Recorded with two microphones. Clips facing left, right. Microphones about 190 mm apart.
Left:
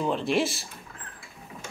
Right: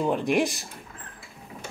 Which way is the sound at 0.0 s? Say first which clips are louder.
Right 2 dB; 15° right (ahead or behind).